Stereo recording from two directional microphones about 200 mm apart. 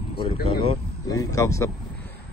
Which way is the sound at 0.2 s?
25° left (ahead or behind).